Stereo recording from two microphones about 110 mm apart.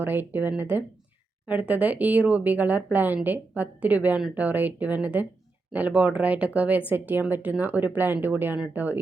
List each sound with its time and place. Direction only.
0.0 s speech: 20° right (ahead or behind)